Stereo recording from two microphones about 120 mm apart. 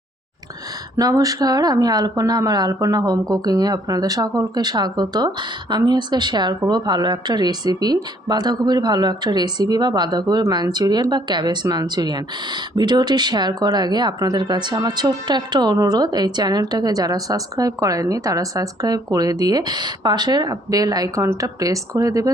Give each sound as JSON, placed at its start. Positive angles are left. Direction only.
{"t": 0.9, "sound": "speech", "side_deg": -30}